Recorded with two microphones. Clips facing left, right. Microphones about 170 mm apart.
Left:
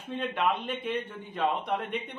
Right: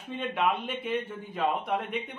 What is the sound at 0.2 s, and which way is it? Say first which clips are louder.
A man's voice: right 1 dB; centre (ahead or behind).